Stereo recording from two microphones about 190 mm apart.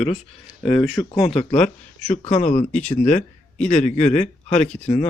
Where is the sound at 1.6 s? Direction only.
35° left (ahead or behind).